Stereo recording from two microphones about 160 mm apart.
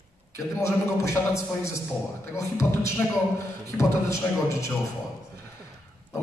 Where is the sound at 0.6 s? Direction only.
20° left (ahead or behind).